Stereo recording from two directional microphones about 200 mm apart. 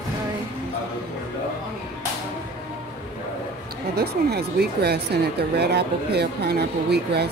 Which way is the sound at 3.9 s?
55° right (ahead or behind).